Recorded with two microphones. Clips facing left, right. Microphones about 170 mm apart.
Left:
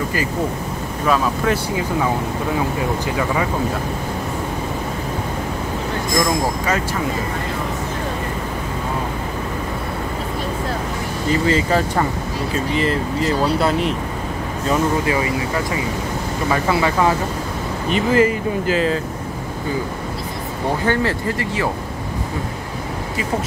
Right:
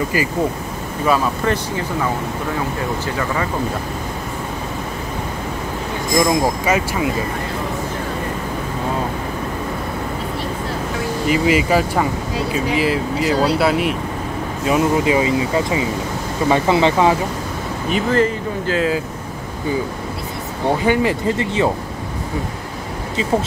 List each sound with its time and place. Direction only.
1.0 s speech: centre (ahead or behind)
6.1 s speech: 10° right (ahead or behind)
11.2 s speech: 10° right (ahead or behind)
14.7 s speech: 20° right (ahead or behind)
18.1 s speech: 5° left (ahead or behind)
20.8 s speech: 15° right (ahead or behind)